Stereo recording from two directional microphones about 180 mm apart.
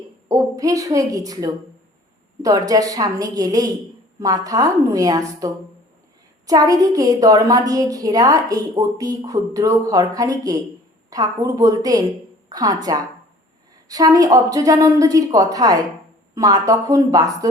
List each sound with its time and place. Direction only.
0.3 s a woman's voice: 20° right (ahead or behind)